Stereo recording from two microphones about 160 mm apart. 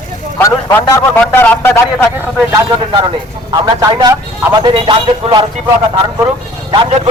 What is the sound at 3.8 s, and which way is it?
Speech, 25° right (ahead or behind).